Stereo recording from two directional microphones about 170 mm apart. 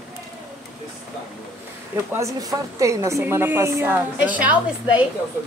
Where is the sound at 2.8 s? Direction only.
20° right (ahead or behind).